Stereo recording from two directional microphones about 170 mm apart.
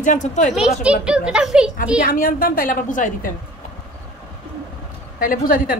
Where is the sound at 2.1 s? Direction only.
55° left (ahead or behind).